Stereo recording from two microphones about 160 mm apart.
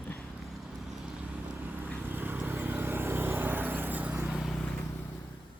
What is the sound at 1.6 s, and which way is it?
Vehicle, 10° right (ahead or behind).